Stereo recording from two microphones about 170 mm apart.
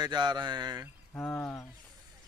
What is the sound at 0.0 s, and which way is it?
Speech, 25° right (ahead or behind).